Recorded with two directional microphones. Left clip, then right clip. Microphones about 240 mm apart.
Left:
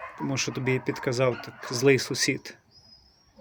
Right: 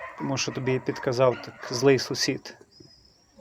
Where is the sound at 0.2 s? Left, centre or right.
Centre.